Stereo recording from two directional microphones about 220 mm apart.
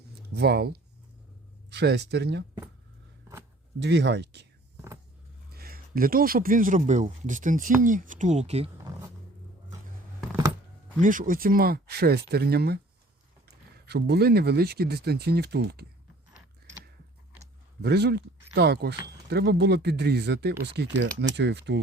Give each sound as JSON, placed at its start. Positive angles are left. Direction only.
{"t": 0.3, "sound": "speech", "side_deg": -45}
{"t": 3.8, "sound": "speech", "side_deg": -50}
{"t": 5.5, "sound": "speech", "side_deg": -45}
{"t": 11.0, "sound": "speech", "side_deg": -40}
{"t": 13.8, "sound": "speech", "side_deg": -45}
{"t": 17.8, "sound": "speech", "side_deg": -50}